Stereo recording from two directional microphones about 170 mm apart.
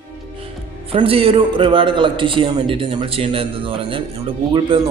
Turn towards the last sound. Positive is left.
turn(degrees=-30)  # may be behind; listen again after turning